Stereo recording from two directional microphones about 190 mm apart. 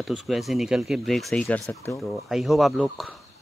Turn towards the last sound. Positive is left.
turn(degrees=0)  # may be behind; listen again after turning